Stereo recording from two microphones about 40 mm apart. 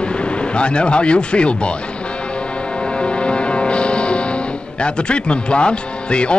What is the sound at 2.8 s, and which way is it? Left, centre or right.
Music, left.